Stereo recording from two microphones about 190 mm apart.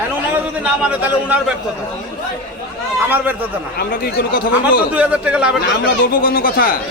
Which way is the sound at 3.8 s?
55° left (ahead or behind).